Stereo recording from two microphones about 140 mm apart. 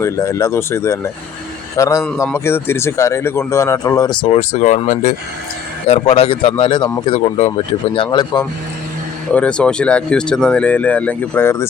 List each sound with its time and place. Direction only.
0.0 s a man's voice: 20° left (ahead or behind)
4.2 s speech: 45° left (ahead or behind)
5.9 s speech: 45° left (ahead or behind)
7.1 s speech: 45° left (ahead or behind)
7.9 s speech: 35° left (ahead or behind)
9.3 s speech: 10° left (ahead or behind)